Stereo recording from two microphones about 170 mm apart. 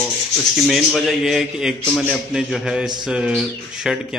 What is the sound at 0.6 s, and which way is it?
A man's voice, 5° left (ahead or behind).